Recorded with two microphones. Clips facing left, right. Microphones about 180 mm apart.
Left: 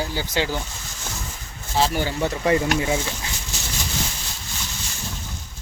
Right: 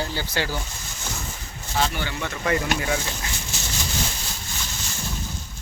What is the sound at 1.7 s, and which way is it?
Speech, 35° left (ahead or behind).